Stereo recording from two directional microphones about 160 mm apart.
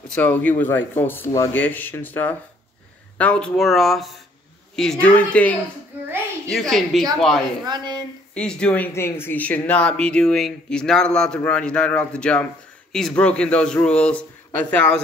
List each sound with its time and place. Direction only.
0.1 s speech: 10° left (ahead or behind)
7.6 s speech: 25° right (ahead or behind)
8.4 s speech: 5° left (ahead or behind)